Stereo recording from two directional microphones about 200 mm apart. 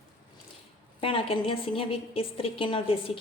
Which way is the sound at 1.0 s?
25° left (ahead or behind).